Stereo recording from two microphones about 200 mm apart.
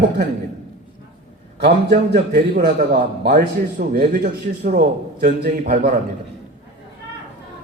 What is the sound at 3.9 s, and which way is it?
A man's voice, 45° right (ahead or behind).